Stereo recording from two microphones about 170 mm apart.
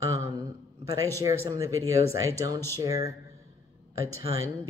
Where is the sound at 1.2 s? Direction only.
20° right (ahead or behind).